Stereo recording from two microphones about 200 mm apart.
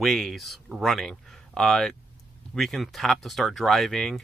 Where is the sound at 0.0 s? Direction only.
Centre (ahead or behind).